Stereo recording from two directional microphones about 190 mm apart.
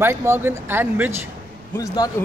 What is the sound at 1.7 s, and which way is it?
Speech, 20° left (ahead or behind).